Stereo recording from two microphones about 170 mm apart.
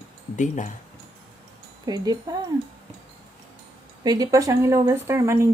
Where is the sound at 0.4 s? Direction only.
45° left (ahead or behind).